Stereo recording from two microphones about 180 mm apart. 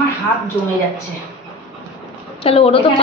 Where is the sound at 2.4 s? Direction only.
30° left (ahead or behind).